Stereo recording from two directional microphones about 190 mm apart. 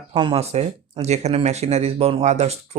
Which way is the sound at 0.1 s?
25° right (ahead or behind).